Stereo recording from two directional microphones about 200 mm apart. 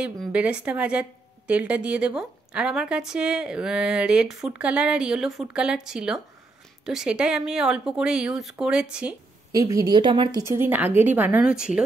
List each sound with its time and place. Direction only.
0.0 s a woman's voice: 5° right (ahead or behind)
9.5 s a woman's voice: 15° right (ahead or behind)
10.4 s a woman's voice: 10° right (ahead or behind)